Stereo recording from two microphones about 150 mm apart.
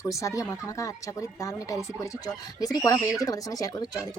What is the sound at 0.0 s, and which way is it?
Speech, 20° left (ahead or behind).